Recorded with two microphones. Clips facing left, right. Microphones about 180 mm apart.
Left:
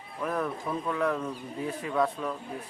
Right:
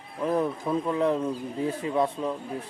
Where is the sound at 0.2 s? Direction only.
25° right (ahead or behind).